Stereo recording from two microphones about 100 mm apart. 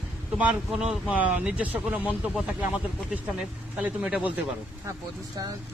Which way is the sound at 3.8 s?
15° right (ahead or behind).